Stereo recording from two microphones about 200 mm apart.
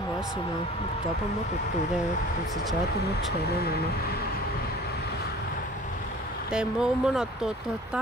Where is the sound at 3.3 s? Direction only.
50° left (ahead or behind).